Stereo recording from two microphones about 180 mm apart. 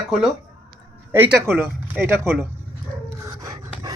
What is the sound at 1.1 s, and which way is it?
Speech, 10° right (ahead or behind).